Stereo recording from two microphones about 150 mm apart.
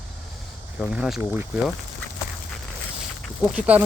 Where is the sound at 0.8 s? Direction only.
5° right (ahead or behind).